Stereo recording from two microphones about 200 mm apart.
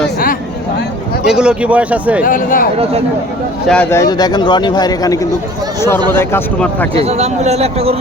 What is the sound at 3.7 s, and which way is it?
A man's voice, 10° left (ahead or behind).